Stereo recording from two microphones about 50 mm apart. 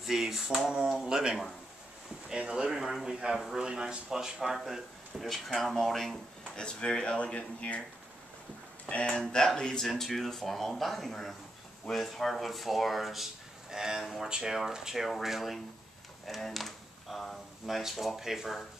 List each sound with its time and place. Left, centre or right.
0.0 s speech: centre
2.7 s speech: centre; by 7.8 s left
8.8 s speech: left
9.2 s speech: centre
16.3 s computer keyboard: centre
17.6 s speech: centre